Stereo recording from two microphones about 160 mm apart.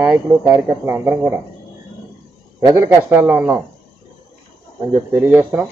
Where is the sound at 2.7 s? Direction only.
10° right (ahead or behind).